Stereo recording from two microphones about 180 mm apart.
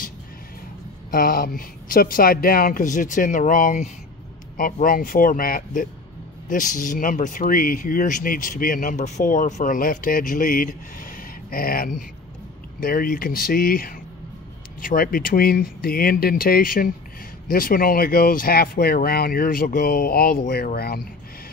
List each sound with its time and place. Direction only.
1.1 s speech: 55° left (ahead or behind)